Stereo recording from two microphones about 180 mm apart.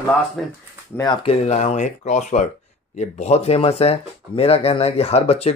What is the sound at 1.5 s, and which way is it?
Speech, 40° left (ahead or behind).